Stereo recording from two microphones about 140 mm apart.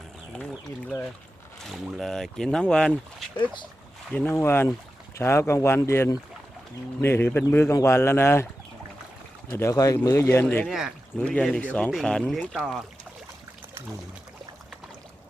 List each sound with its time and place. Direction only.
1.6 s speech: centre (ahead or behind)
3.3 s speech: 35° left (ahead or behind)
4.1 s speech: 15° left (ahead or behind)
9.5 s speech: 20° left (ahead or behind)
10.7 s speech: 5° right (ahead or behind)
11.3 s speech: 5° left (ahead or behind)